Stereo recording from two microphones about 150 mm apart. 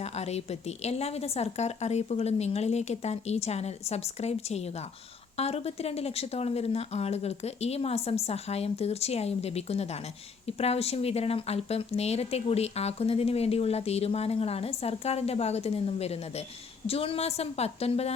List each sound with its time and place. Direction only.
0.0 s speech: 45° left (ahead or behind)